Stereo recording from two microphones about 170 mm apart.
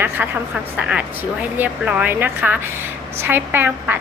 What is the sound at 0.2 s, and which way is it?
A woman's voice, 10° right (ahead or behind).